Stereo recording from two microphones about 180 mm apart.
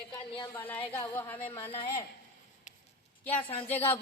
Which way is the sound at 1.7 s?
30° left (ahead or behind).